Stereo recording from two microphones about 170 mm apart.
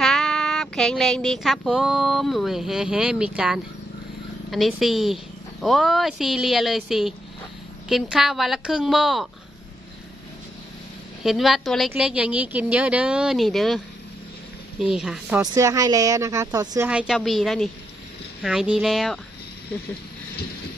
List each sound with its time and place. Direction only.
0.0 s a sound: centre (ahead or behind)
4.5 s a woman's voice: centre (ahead or behind)
11.2 s a woman's voice: centre (ahead or behind)
15.4 s speech: 20° right (ahead or behind)
16.9 s a woman's voice: 5° right (ahead or behind)